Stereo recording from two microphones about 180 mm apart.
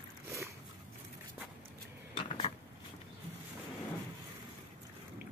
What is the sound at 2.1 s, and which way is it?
Dishes, 30° left (ahead or behind).